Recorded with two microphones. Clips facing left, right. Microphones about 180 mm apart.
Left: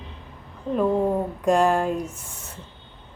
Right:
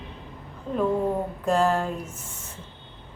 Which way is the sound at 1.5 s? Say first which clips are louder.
Left 3 dB; 15° left (ahead or behind).